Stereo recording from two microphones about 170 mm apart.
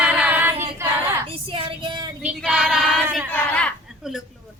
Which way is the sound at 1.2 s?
30° right (ahead or behind).